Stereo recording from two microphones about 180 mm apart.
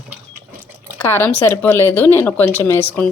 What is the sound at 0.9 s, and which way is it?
Speech, 10° left (ahead or behind).